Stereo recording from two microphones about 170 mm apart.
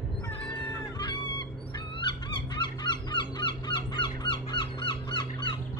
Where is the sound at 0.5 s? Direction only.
30° left (ahead or behind).